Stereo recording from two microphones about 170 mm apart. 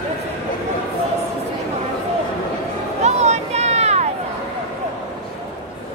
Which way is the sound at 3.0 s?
40° right (ahead or behind).